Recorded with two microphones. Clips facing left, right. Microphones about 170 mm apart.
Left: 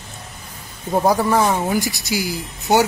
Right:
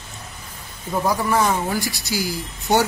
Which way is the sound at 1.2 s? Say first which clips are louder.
Left 2 dB; 20° left (ahead or behind).